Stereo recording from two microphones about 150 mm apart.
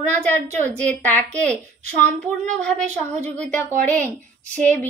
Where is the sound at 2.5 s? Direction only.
5° left (ahead or behind).